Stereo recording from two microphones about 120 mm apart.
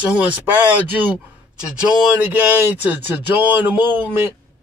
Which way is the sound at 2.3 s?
15° right (ahead or behind).